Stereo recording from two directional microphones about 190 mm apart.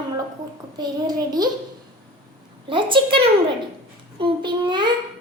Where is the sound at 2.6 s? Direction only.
25° right (ahead or behind).